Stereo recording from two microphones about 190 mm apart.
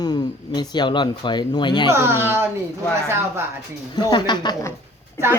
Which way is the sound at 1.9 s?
10° right (ahead or behind).